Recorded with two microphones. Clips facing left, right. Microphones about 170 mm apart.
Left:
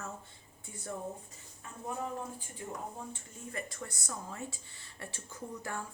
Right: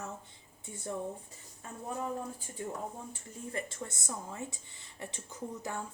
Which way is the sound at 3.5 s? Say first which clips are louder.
Right 2 dB; 30° right (ahead or behind).